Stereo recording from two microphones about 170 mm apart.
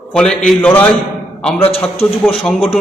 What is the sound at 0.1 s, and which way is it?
Speech, 5° left (ahead or behind).